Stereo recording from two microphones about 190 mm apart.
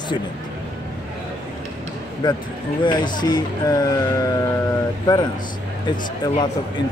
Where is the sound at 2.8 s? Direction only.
25° left (ahead or behind).